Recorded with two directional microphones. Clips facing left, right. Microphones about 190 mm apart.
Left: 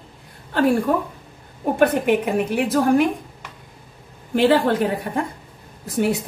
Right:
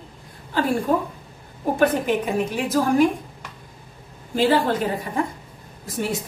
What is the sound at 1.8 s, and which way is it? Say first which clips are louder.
Speech: left 3 dB; 60° left (ahead or behind).